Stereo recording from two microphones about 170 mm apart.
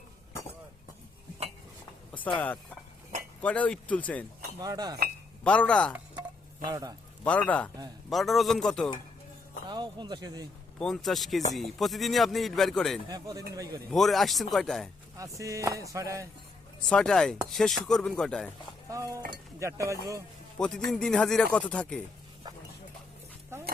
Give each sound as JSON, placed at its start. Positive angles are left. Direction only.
{"t": 2.4, "sound": "speech", "side_deg": 10}
{"t": 4.6, "sound": "speech", "side_deg": -20}
{"t": 5.4, "sound": "speech", "side_deg": 5}
{"t": 6.7, "sound": "speech", "side_deg": -20}
{"t": 7.3, "sound": "speech", "side_deg": 10}
{"t": 9.6, "sound": "speech", "side_deg": -25}
{"t": 10.8, "sound": "speech", "side_deg": 0}
{"t": 13.1, "sound": "speech", "side_deg": -25}
{"t": 13.9, "sound": "speech", "side_deg": 0}
{"t": 15.4, "sound": "speech", "side_deg": -20}
{"t": 16.9, "sound": "speech", "side_deg": 5}
{"t": 18.9, "sound": "cutlery", "side_deg": -20}
{"t": 19.5, "sound": "speech", "side_deg": -15}
{"t": 20.6, "sound": "speech", "side_deg": 5}